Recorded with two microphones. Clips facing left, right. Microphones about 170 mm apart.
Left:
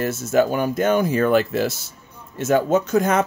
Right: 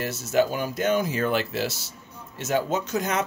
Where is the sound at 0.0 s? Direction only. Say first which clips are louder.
Left 4 dB; 50° left (ahead or behind).